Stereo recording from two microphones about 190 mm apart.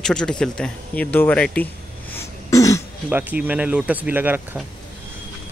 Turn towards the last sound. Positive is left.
turn(degrees=-10)  # may be behind; listen again after turning